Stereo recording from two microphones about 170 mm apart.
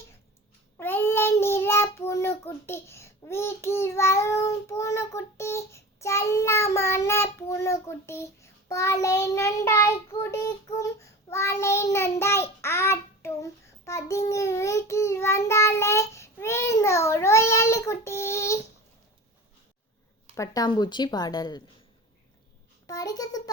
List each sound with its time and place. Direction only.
0.8 s child singing: 10° left (ahead or behind)
2.4 s a child's voice: 15° left (ahead or behind)
20.3 s a woman's voice: 20° left (ahead or behind)
22.9 s a sound: 20° left (ahead or behind)